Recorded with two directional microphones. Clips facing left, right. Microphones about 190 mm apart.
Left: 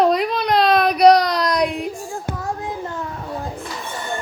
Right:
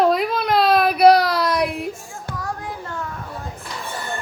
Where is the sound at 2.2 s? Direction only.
20° left (ahead or behind).